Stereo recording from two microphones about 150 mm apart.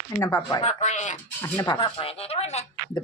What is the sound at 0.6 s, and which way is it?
Speech, 50° left (ahead or behind).